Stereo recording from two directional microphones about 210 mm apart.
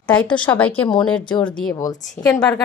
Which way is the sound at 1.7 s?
15° left (ahead or behind).